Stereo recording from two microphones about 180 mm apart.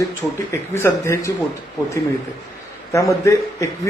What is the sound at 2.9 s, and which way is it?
Speech, 15° left (ahead or behind).